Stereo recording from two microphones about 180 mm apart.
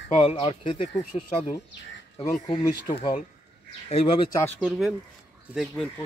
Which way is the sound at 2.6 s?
20° left (ahead or behind).